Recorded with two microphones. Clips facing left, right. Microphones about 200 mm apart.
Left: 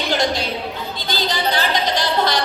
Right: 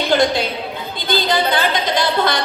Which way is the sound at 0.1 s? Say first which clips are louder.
Right 4 dB; 55° right (ahead or behind).